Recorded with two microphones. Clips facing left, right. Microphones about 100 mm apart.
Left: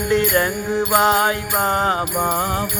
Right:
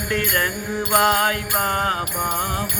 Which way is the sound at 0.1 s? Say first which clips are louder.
Left 5 dB; 20° left (ahead or behind).